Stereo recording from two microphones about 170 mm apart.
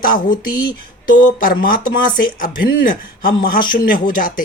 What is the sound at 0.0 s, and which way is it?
Speech, 55° left (ahead or behind).